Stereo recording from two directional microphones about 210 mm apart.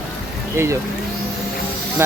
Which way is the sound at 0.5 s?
10° right (ahead or behind).